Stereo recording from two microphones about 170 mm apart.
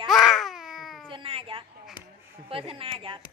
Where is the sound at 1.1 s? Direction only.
30° right (ahead or behind).